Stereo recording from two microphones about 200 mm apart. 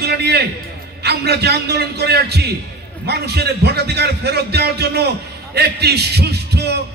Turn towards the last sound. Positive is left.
turn(degrees=-55)  # may be behind; listen again after turning